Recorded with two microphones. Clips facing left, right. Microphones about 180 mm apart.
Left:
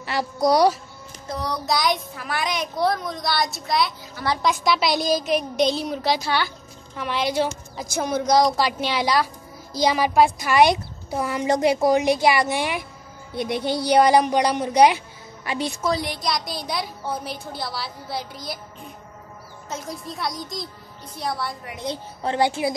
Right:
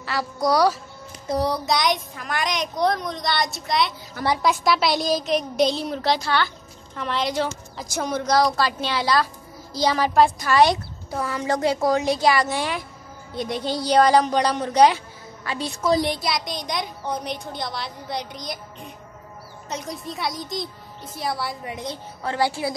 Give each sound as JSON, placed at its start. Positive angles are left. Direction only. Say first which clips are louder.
{"t": 0.0, "sound": "speech", "louder": "left 2 dB", "side_deg": 20}
{"t": 1.7, "sound": "a woman's voice", "louder": "even", "side_deg": 0}
{"t": 16.2, "sound": "a woman's voice", "louder": "even", "side_deg": 0}
{"t": 19.7, "sound": "a woman's voice", "louder": "right 1 dB", "side_deg": 0}
{"t": 22.2, "sound": "speech", "louder": "left 2 dB", "side_deg": 20}